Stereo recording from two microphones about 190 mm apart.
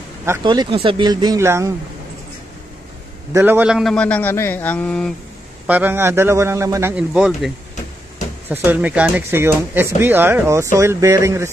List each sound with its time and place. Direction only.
0.4 s speech: 25° right (ahead or behind)
3.3 s a man's voice: 10° right (ahead or behind)
5.7 s speech: 10° right (ahead or behind)
8.6 s speech: 10° right (ahead or behind)